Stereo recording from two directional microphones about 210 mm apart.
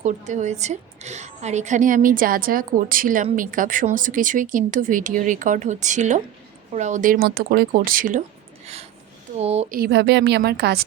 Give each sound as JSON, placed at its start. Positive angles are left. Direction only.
{"t": 0.0, "sound": "a woman's voice", "side_deg": -35}
{"t": 8.6, "sound": "a sound", "side_deg": -30}
{"t": 9.4, "sound": "speech", "side_deg": -30}
{"t": 9.7, "sound": "a woman's voice", "side_deg": -50}